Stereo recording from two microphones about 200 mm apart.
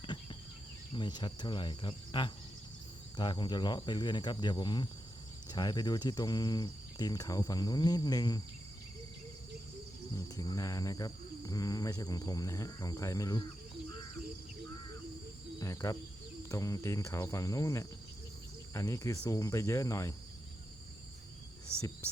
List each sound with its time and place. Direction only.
0.0 s a sound: 25° left (ahead or behind)
0.9 s speech: 20° left (ahead or behind)
10.2 s speech: 15° left (ahead or behind)
15.6 s speech: 15° left (ahead or behind)